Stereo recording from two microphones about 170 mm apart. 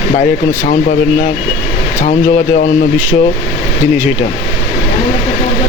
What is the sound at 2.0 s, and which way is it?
Speech, 45° left (ahead or behind).